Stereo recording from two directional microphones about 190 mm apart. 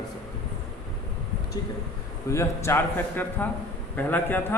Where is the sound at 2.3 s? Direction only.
15° left (ahead or behind).